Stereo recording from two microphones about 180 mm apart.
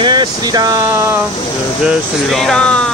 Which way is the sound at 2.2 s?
Centre (ahead or behind).